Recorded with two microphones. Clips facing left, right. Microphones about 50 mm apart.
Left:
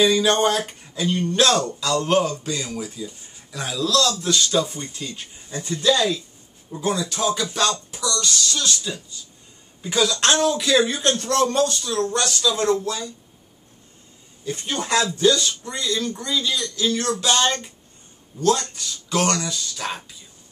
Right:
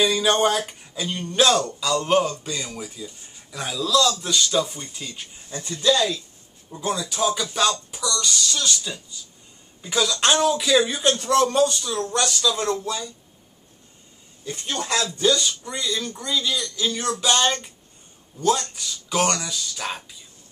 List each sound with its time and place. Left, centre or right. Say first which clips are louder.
0.0 s speech: left 2 dB; centre
5.9 s speech: left 1 dB; centre
14.4 s speech: left 2 dB; centre
15.1 s speech: left 2 dB; centre